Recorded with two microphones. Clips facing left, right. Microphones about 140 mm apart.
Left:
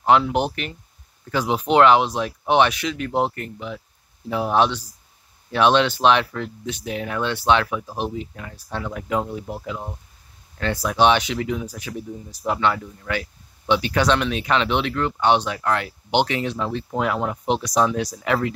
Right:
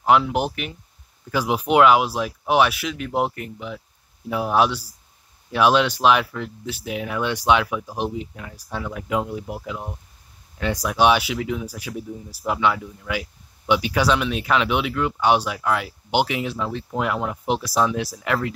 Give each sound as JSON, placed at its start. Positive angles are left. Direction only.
{"t": 0.0, "sound": "speech", "side_deg": -5}